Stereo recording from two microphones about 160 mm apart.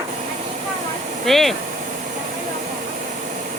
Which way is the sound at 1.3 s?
Centre (ahead or behind).